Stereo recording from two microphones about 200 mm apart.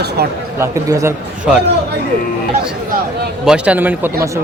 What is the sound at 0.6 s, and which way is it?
Speech, 15° right (ahead or behind).